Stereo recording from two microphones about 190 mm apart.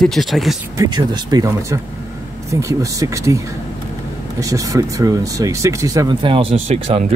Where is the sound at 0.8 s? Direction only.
20° right (ahead or behind).